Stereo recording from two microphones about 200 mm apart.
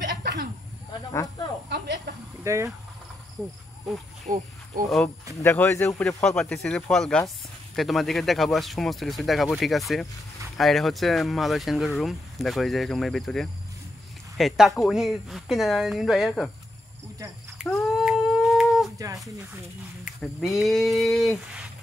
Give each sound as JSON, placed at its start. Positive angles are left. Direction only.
{"t": 0.2, "sound": "a sound", "side_deg": -60}
{"t": 1.7, "sound": "snake", "side_deg": -55}
{"t": 2.4, "sound": "speech", "side_deg": -15}
{"t": 3.4, "sound": "speech", "side_deg": 0}
{"t": 4.3, "sound": "speech", "side_deg": -40}
{"t": 4.8, "sound": "speech", "side_deg": 0}
{"t": 5.4, "sound": "speech", "side_deg": 15}
{"t": 17.6, "sound": "humming", "side_deg": 0}
{"t": 18.9, "sound": "speech", "side_deg": -15}
{"t": 20.1, "sound": "speech", "side_deg": 0}